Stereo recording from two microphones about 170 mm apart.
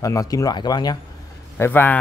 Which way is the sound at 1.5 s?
10° left (ahead or behind).